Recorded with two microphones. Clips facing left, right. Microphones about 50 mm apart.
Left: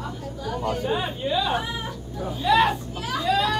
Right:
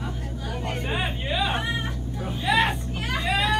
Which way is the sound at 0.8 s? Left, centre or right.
Right.